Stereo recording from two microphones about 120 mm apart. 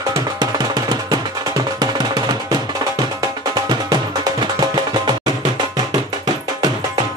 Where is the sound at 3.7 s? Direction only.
35° right (ahead or behind).